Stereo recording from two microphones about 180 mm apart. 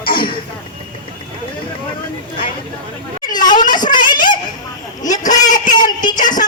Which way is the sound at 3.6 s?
45° left (ahead or behind).